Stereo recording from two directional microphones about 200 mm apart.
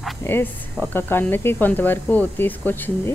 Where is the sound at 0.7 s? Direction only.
10° left (ahead or behind).